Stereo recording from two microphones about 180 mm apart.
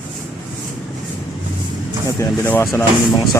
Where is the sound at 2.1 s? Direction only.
15° left (ahead or behind).